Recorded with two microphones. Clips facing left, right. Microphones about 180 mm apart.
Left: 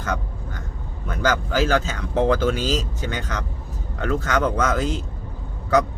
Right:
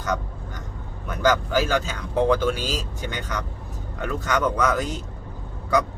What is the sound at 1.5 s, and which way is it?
Speech, 15° right (ahead or behind).